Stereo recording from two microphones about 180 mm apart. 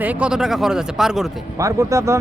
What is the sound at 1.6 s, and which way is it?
Speech, 15° right (ahead or behind).